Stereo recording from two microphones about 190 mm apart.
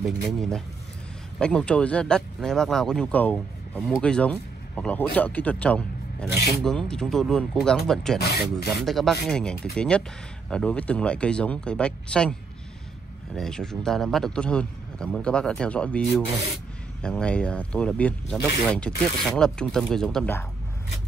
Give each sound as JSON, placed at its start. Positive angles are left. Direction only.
{"t": 0.0, "sound": "speech", "side_deg": 0}
{"t": 8.2, "sound": "speech", "side_deg": 55}
{"t": 8.7, "sound": "speech", "side_deg": 0}